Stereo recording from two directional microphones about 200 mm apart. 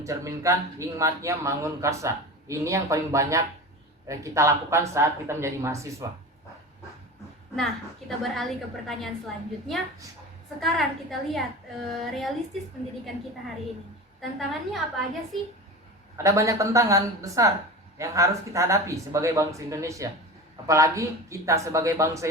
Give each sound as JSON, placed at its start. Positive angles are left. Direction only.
{"t": 0.0, "sound": "a man's voice", "side_deg": -15}
{"t": 8.2, "sound": "a woman's voice", "side_deg": 0}
{"t": 14.2, "sound": "a woman's voice", "side_deg": 0}
{"t": 16.1, "sound": "a man's voice", "side_deg": -15}